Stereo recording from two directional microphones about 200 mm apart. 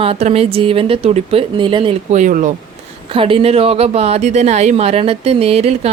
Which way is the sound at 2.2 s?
40° right (ahead or behind).